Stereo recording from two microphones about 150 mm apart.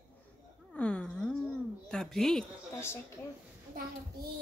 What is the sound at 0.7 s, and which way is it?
A woman's voice, 5° left (ahead or behind).